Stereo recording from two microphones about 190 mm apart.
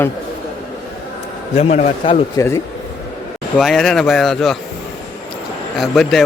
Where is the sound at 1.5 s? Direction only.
35° left (ahead or behind).